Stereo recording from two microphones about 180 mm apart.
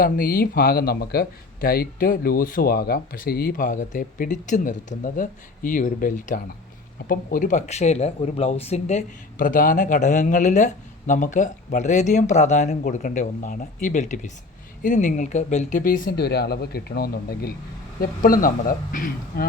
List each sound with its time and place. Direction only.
0.0 s speech: 55° left (ahead or behind)